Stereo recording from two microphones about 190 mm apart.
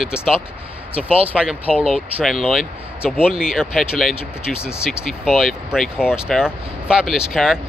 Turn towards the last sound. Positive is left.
turn(degrees=0)  # may be behind; listen again after turning